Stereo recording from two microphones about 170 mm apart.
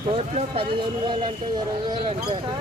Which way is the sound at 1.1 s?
25° right (ahead or behind).